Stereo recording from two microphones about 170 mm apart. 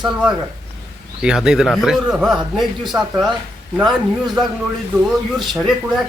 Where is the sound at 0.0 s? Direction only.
5° right (ahead or behind).